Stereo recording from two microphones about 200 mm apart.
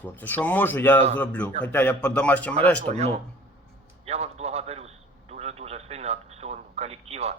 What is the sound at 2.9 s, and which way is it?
Speech, 30° right (ahead or behind).